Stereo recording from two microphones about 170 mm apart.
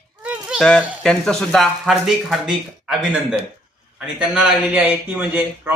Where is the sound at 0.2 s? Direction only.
5° right (ahead or behind).